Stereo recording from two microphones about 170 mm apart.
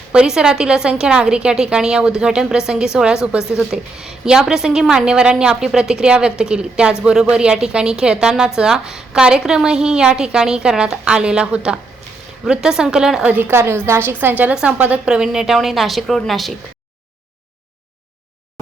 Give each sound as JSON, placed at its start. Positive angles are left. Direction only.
{"t": 0.1, "sound": "a woman's voice", "side_deg": -5}